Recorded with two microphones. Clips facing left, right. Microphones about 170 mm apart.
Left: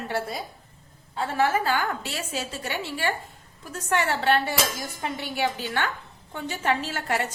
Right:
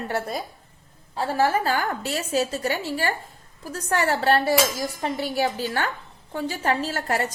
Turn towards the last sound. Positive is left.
turn(degrees=-40)  # may be behind; listen again after turning